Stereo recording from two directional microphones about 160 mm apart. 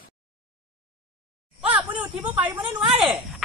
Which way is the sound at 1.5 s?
10° right (ahead or behind).